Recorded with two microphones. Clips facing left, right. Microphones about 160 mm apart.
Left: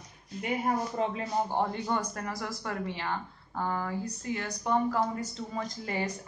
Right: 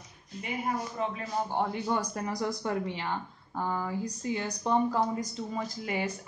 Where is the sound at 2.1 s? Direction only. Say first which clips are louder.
Right 4 dB; 15° right (ahead or behind).